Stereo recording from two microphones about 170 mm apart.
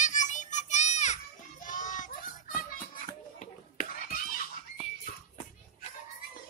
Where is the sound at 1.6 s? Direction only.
50° left (ahead or behind).